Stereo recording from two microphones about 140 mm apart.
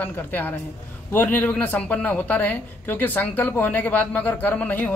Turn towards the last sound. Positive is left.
turn(degrees=10)  # may be behind; listen again after turning